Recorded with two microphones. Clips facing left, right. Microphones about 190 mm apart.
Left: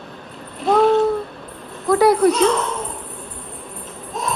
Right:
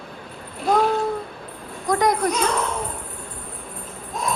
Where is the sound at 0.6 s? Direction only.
Centre (ahead or behind).